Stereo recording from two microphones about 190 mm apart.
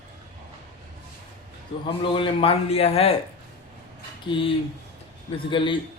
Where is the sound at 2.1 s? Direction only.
30° left (ahead or behind).